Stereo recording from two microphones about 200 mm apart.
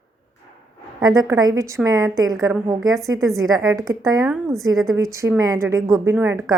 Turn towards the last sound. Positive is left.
turn(degrees=-15)  # may be behind; listen again after turning